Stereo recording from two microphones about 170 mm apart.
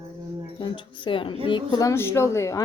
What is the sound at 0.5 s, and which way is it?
A woman's voice, 25° left (ahead or behind).